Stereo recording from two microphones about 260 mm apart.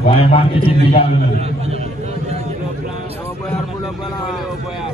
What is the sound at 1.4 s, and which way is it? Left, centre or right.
Speech, right.